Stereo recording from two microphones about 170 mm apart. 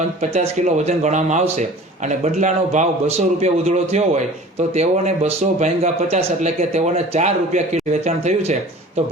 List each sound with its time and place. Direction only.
0.2 s speech: 40° right (ahead or behind)